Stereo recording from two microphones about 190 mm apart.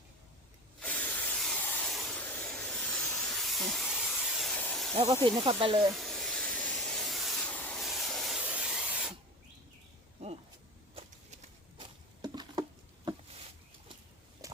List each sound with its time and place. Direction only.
0.8 s spray: 10° left (ahead or behind)
4.9 s speech: 25° right (ahead or behind)
5.9 s hiss: centre (ahead or behind)
11.8 s patter: 25° right (ahead or behind)